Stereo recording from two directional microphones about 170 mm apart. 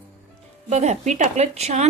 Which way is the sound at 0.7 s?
40° right (ahead or behind).